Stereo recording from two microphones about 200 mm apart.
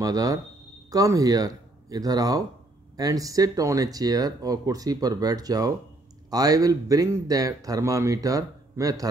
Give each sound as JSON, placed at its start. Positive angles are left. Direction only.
{"t": 0.0, "sound": "speech", "side_deg": -15}